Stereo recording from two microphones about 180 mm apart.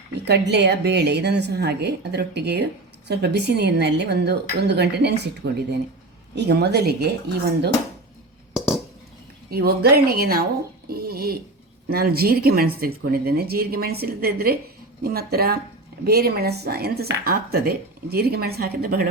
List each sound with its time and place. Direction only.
0.3 s a woman's voice: 70° right (ahead or behind)
6.3 s a woman's voice: 65° right (ahead or behind)
8.5 s a sound: 5° right (ahead or behind)
9.5 s speech: 60° right (ahead or behind)